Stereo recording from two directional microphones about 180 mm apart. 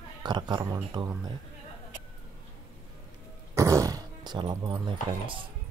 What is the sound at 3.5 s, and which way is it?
Speech, 15° right (ahead or behind).